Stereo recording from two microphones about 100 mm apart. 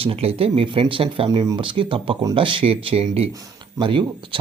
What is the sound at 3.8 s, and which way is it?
Speech, 55° right (ahead or behind).